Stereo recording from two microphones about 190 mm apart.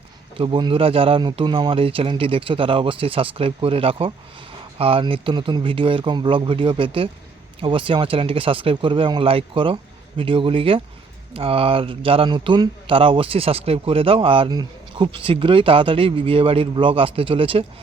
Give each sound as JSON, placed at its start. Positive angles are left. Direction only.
{"t": 0.3, "sound": "speech", "side_deg": -25}